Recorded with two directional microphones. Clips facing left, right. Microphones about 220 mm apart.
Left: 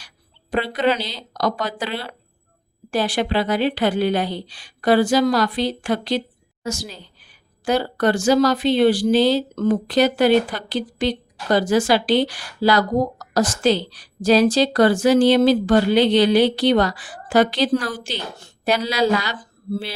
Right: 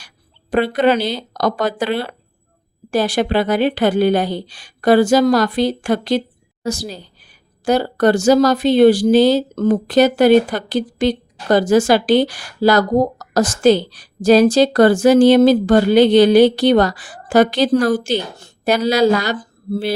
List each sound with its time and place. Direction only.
0.5 s a woman's voice: 50° right (ahead or behind)